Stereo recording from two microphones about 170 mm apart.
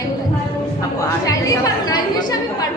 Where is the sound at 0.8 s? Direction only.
20° left (ahead or behind).